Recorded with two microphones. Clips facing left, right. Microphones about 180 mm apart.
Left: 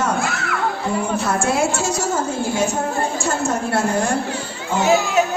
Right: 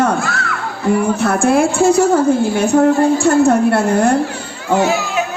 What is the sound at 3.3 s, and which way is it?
Speech, 60° right (ahead or behind).